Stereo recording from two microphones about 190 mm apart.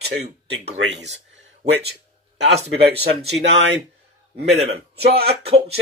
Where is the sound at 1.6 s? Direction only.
60° right (ahead or behind).